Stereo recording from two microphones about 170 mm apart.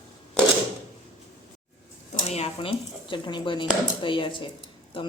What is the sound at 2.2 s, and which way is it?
Speech, 35° left (ahead or behind).